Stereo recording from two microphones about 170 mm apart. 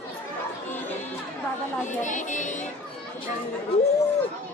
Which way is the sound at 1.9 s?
50° left (ahead or behind).